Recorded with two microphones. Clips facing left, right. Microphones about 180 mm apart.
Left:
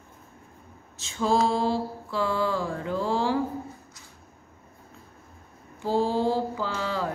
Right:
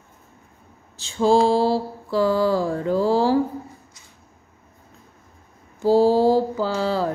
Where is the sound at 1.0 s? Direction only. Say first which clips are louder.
Right 7 dB; 30° right (ahead or behind).